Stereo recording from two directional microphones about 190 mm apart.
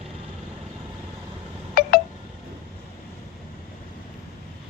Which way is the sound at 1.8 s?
50° left (ahead or behind).